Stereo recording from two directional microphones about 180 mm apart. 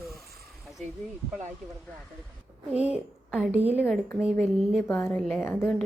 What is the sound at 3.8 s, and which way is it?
A woman's voice, 5° left (ahead or behind).